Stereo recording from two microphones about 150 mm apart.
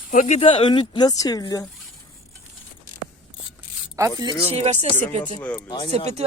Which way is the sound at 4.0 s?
25° right (ahead or behind).